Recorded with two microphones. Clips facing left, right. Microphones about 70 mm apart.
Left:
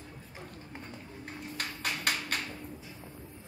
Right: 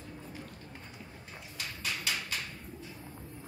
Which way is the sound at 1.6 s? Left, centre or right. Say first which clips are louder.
Left 3 dB; left.